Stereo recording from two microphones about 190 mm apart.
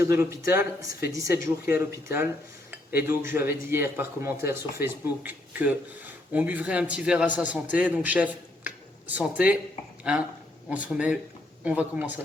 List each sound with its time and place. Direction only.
0.0 s speech: 15° right (ahead or behind)